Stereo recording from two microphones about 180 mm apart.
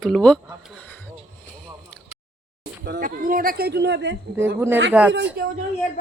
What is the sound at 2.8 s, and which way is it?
Speech, 60° right (ahead or behind).